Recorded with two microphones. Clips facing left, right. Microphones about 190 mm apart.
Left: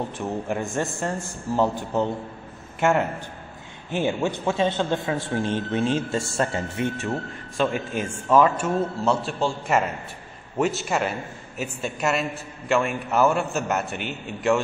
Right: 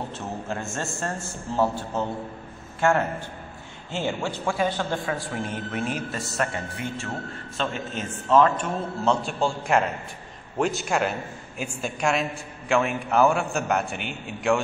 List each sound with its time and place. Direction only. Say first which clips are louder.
0.5 s a man's voice: left 4 dB; 15° left (ahead or behind)
7.5 s a man's voice: left 5 dB; 10° left (ahead or behind)